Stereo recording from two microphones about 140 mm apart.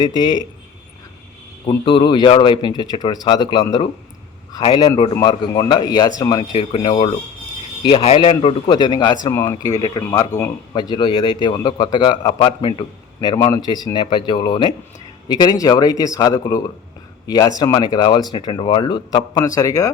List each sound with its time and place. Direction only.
1.6 s speech: 35° left (ahead or behind)
6.5 s speech: 40° left (ahead or behind)
9.2 s speech: 20° left (ahead or behind)